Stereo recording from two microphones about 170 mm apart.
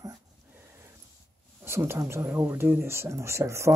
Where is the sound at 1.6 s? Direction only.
15° right (ahead or behind).